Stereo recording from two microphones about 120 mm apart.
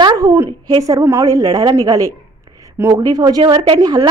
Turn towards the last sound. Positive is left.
turn(degrees=-30)  # may be behind; listen again after turning